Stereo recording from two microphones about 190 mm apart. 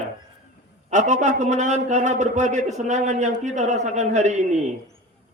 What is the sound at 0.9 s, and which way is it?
A man's voice, 40° right (ahead or behind).